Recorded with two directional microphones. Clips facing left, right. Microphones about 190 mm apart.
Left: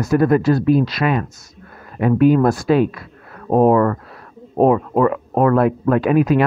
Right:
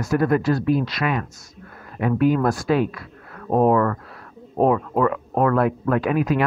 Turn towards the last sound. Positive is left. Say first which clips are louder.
# left 5 dB
turn(degrees=25)  # may be behind; listen again after turning